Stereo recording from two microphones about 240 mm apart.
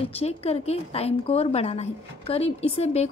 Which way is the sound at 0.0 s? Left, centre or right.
Left.